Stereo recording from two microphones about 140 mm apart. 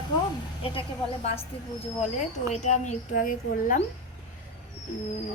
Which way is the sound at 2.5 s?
55° left (ahead or behind).